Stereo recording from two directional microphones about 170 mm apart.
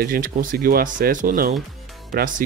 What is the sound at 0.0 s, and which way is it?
Speech, 55° right (ahead or behind).